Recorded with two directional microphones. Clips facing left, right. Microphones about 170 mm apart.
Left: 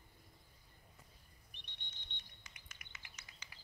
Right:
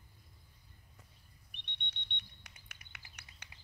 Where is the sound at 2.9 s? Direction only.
60° right (ahead or behind).